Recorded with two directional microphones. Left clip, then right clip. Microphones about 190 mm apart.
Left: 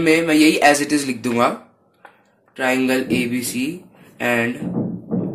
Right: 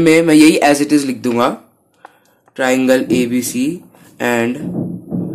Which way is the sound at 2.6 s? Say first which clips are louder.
Right 6 dB; 20° right (ahead or behind).